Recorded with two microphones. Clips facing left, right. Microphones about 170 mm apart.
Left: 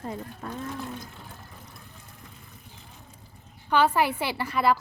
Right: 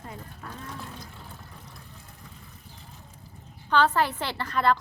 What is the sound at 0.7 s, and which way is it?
Vehicle, centre (ahead or behind).